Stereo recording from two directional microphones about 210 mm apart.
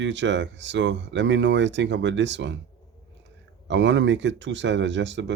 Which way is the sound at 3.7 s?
60° right (ahead or behind).